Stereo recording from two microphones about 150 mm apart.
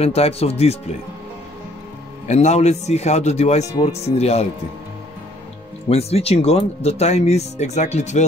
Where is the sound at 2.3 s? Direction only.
50° left (ahead or behind).